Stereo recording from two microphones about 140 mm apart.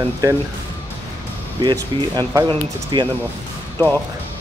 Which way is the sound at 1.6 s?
30° right (ahead or behind).